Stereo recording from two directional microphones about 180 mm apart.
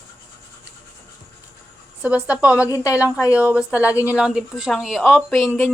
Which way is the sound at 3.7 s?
15° left (ahead or behind).